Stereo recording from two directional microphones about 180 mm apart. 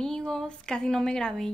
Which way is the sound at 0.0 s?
5° left (ahead or behind).